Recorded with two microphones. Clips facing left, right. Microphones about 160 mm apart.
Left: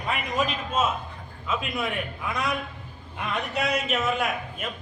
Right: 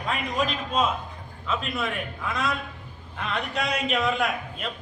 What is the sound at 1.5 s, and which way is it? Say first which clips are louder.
A man's voice: even; 15° left (ahead or behind).